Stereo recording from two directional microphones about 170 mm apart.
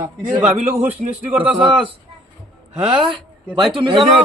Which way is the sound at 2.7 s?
25° right (ahead or behind).